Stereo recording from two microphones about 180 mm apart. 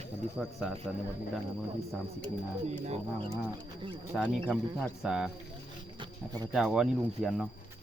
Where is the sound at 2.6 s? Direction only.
35° right (ahead or behind).